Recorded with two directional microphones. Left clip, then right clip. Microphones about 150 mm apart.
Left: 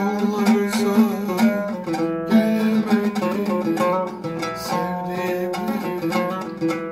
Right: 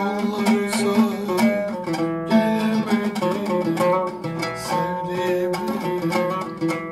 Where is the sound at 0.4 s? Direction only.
20° left (ahead or behind).